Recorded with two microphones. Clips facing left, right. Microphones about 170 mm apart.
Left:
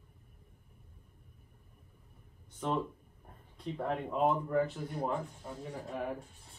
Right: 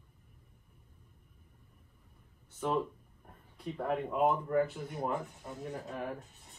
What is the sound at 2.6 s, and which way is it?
Speech, 5° right (ahead or behind).